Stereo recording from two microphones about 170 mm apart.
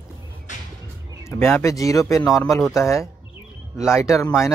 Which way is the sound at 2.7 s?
15° left (ahead or behind).